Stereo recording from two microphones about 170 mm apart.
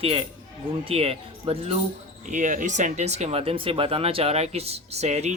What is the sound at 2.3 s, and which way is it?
Speech, 45° right (ahead or behind).